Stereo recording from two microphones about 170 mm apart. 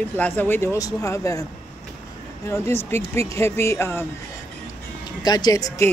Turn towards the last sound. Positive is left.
turn(degrees=20)  # may be behind; listen again after turning